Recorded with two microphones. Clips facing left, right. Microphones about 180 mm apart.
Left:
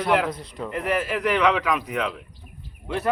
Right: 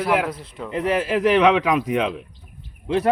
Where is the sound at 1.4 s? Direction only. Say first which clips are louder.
Right 5 dB; 25° right (ahead or behind).